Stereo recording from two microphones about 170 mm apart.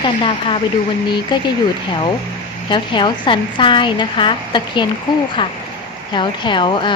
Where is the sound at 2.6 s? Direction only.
25° left (ahead or behind).